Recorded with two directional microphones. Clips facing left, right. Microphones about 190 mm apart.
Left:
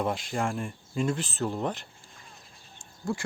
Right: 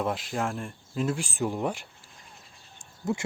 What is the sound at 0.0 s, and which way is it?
Speech, centre (ahead or behind).